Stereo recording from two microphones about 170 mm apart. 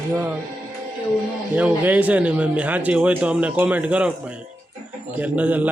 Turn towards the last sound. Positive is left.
turn(degrees=-10)  # may be behind; listen again after turning